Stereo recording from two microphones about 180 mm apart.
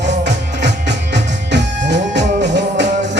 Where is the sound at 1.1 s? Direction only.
75° right (ahead or behind).